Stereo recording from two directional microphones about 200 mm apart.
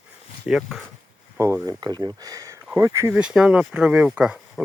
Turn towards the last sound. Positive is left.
turn(degrees=-5)  # may be behind; listen again after turning